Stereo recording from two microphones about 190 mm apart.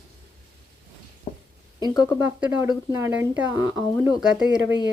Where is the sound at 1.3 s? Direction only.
35° left (ahead or behind).